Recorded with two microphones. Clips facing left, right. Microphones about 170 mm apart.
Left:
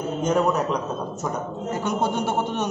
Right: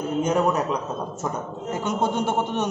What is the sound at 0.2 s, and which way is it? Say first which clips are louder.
Speech: left 1 dB; 10° right (ahead or behind).